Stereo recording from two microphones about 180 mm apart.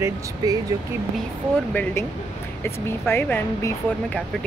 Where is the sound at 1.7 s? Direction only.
10° left (ahead or behind).